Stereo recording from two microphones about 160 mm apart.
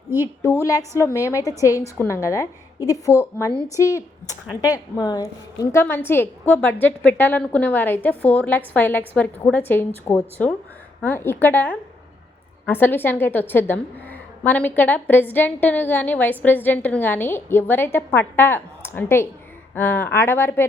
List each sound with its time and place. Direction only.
0.2 s a woman's voice: 20° left (ahead or behind)